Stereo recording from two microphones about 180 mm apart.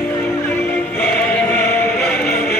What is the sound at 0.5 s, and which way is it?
Music, 10° left (ahead or behind).